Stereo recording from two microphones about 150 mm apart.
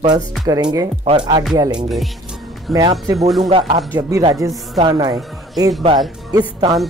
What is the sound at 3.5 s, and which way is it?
Speech, 35° right (ahead or behind).